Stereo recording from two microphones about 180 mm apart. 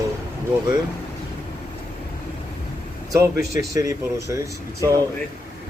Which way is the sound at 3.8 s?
15° right (ahead or behind).